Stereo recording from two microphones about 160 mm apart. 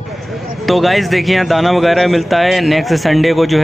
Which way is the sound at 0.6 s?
Centre (ahead or behind).